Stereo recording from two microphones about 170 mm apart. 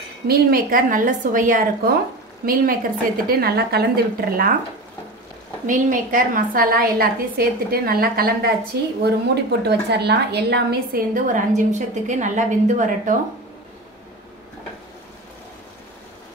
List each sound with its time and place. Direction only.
0.3 s a woman's voice: 55° right (ahead or behind)
5.7 s a woman's voice: 55° right (ahead or behind)
9.0 s a woman's voice: 75° right (ahead or behind); by 13.1 s 50° right (ahead or behind)